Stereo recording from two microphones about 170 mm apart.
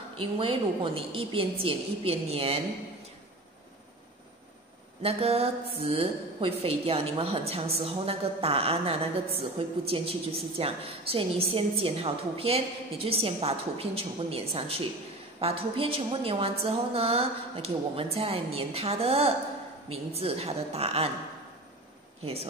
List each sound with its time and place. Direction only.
0.1 s a woman's voice: 35° right (ahead or behind)
5.0 s a woman's voice: 35° right (ahead or behind)
22.2 s a woman's voice: 35° right (ahead or behind)